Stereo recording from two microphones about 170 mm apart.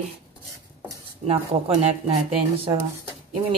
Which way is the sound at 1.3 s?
35° right (ahead or behind).